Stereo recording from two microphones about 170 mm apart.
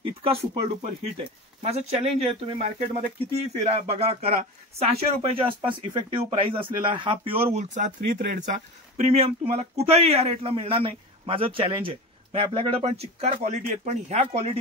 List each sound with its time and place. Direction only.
0.0 s speech: 35° right (ahead or behind)
7.5 s speech: 45° right (ahead or behind)
8.9 s speech: 40° right (ahead or behind)